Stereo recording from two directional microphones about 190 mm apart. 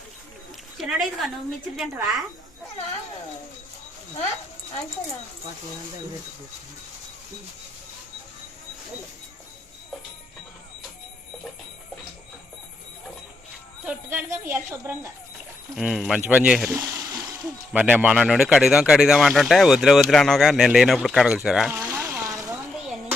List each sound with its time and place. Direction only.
0.8 s speech: centre (ahead or behind)
13.8 s speech: 10° right (ahead or behind)
15.7 s speech: centre (ahead or behind)
16.7 s a sound: 15° right (ahead or behind)
17.7 s speech: 5° right (ahead or behind)
21.8 s a sound: 15° right (ahead or behind)